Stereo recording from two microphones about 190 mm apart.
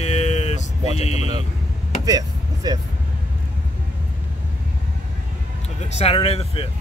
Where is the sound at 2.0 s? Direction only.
20° right (ahead or behind).